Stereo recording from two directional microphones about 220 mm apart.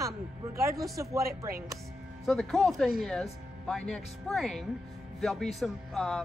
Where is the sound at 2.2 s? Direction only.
Centre (ahead or behind).